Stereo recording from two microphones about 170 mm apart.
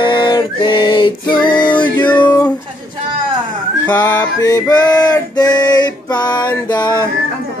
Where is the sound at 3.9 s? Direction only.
20° left (ahead or behind).